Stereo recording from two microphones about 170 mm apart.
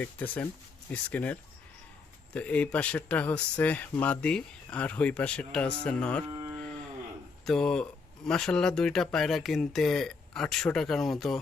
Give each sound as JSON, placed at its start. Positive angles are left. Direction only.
{"t": 0.0, "sound": "speech", "side_deg": 10}
{"t": 6.2, "sound": "moo", "side_deg": -20}
{"t": 7.4, "sound": "speech", "side_deg": 5}